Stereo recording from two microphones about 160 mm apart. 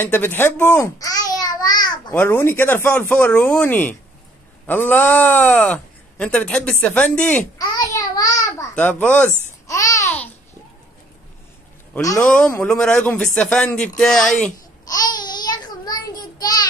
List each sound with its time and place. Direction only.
0.0 s babbling: 15° left (ahead or behind)
2.1 s speech: 15° left (ahead or behind)
7.5 s babbling: 20° left (ahead or behind)
12.0 s a man's voice: 20° left (ahead or behind)
12.4 s speech: 5° left (ahead or behind)
14.9 s a sound: 25° left (ahead or behind)